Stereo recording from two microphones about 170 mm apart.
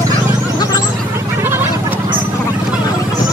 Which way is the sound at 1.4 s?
15° right (ahead or behind).